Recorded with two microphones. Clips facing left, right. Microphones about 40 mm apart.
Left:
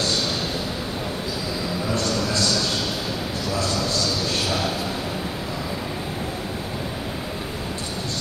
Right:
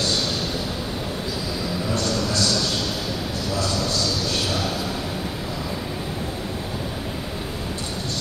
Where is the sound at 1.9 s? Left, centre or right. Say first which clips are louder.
Even; left.